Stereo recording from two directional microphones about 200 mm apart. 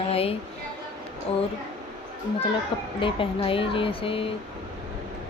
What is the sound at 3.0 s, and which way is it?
Speech, 25° left (ahead or behind).